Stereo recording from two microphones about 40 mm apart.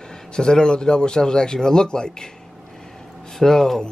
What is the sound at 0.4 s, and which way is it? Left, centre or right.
Speech, centre.